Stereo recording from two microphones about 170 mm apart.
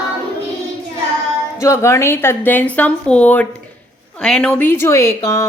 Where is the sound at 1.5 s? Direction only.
20° left (ahead or behind).